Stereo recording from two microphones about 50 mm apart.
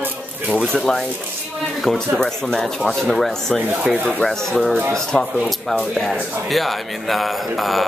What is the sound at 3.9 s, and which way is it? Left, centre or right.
Speech, right.